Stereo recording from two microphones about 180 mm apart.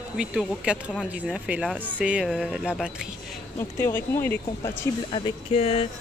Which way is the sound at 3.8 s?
10° left (ahead or behind).